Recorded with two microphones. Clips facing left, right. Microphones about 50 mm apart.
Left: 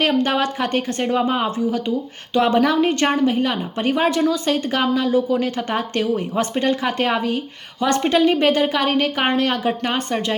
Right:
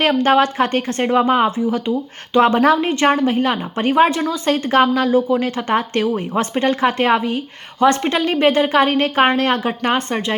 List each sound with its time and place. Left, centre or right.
0.2 s speech: right
2.8 s a woman's voice: right